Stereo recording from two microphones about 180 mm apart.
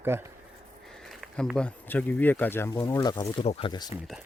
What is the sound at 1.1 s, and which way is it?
Speech, centre (ahead or behind).